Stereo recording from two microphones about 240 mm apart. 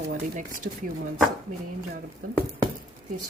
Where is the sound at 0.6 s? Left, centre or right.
Right.